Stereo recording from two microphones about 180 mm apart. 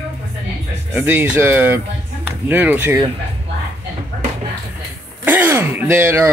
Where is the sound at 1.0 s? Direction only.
10° right (ahead or behind).